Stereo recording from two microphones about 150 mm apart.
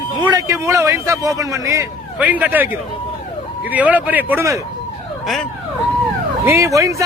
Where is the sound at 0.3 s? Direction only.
25° right (ahead or behind).